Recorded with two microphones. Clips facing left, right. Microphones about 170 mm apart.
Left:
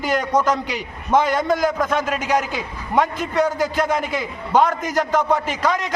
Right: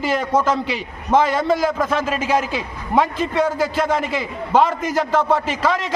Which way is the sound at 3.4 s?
5° right (ahead or behind).